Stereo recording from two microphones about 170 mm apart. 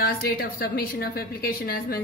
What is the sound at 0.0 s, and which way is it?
A woman's voice, 65° left (ahead or behind).